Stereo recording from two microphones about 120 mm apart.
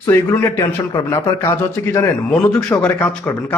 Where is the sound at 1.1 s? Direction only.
20° left (ahead or behind).